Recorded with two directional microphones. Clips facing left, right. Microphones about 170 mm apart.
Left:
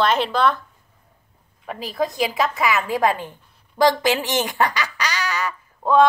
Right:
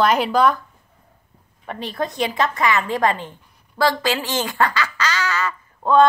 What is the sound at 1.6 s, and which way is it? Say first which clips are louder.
A woman's voice: left 1 dB; centre (ahead or behind).